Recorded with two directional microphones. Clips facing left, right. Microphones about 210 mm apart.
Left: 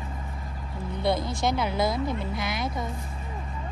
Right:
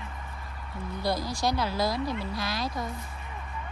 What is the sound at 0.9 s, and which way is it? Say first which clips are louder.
Speech: left 4 dB; 25° left (ahead or behind).